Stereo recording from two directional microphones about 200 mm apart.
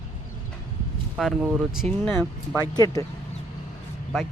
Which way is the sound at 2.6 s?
20° left (ahead or behind).